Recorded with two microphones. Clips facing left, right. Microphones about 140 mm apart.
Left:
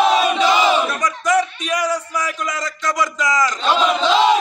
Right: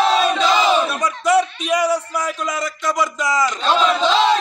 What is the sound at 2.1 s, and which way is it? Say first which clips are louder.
A man's voice: right 1 dB; 25° right (ahead or behind).